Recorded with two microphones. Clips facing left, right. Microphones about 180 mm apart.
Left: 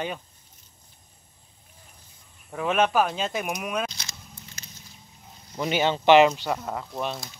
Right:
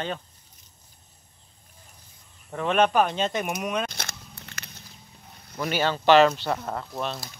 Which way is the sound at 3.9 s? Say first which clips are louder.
Right 6 dB; 55° right (ahead or behind).